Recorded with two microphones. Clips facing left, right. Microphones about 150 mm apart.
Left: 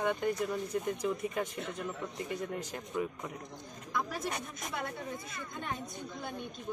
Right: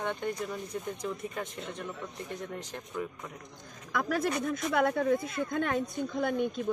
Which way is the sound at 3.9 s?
85° right.